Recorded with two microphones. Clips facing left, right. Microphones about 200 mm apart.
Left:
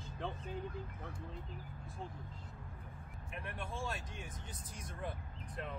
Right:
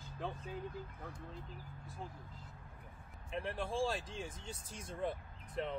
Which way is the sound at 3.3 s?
30° right (ahead or behind).